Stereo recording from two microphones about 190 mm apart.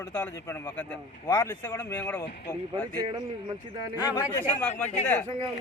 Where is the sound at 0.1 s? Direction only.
10° left (ahead or behind).